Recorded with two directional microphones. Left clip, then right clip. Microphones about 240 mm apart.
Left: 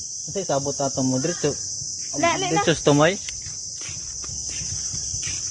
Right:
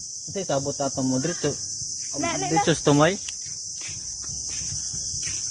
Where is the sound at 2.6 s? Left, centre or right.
Centre.